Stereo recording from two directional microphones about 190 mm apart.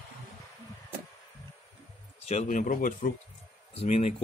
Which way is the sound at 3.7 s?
30° left (ahead or behind).